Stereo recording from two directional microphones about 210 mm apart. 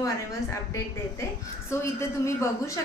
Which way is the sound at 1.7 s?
15° left (ahead or behind).